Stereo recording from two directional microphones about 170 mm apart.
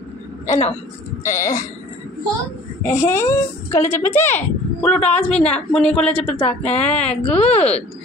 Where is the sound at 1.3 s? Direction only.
15° left (ahead or behind).